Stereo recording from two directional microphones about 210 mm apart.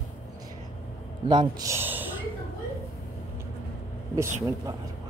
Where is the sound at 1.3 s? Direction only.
20° right (ahead or behind).